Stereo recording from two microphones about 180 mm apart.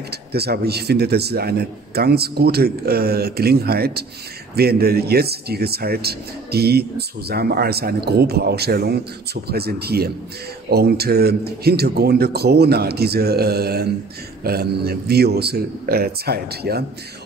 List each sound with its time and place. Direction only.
0.1 s a man's voice: 60° right (ahead or behind)